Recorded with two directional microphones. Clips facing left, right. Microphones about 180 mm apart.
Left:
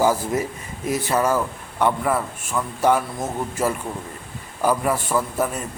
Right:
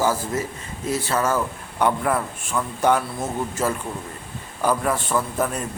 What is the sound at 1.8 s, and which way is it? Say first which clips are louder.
A man's voice: even; centre (ahead or behind).